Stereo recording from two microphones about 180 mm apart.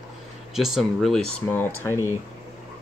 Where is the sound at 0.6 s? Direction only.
Centre (ahead or behind).